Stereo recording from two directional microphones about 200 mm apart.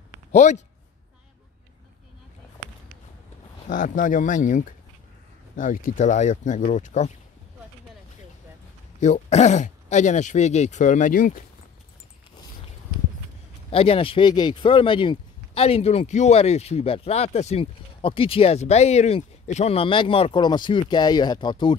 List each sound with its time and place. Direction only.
0.3 s a man's voice: 35° left (ahead or behind)
3.6 s speech: 40° left (ahead or behind)
9.0 s speech: 35° left (ahead or behind)
13.7 s speech: 30° left (ahead or behind)